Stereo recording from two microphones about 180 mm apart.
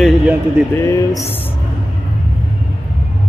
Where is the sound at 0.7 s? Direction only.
20° left (ahead or behind).